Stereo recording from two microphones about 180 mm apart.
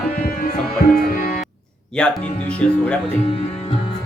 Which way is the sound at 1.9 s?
5° left (ahead or behind).